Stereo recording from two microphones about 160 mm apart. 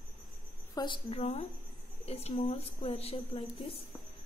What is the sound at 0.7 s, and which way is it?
A woman's voice, 30° left (ahead or behind).